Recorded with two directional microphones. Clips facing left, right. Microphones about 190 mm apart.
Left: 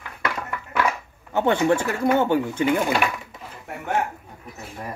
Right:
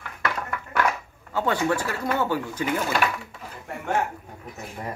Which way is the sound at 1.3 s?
25° left (ahead or behind).